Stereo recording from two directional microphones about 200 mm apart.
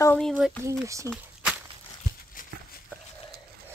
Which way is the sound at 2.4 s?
45° left (ahead or behind).